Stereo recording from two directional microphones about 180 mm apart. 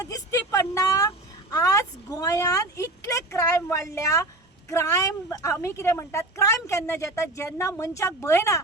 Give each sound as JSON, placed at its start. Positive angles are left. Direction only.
{"t": 0.0, "sound": "a woman's voice", "side_deg": 20}